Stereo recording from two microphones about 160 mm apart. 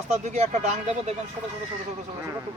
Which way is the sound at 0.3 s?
45° right (ahead or behind).